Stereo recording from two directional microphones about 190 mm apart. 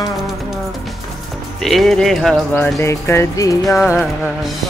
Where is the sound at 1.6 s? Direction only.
Centre (ahead or behind).